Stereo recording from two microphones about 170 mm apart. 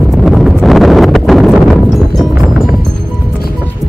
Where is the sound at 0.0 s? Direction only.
Centre (ahead or behind).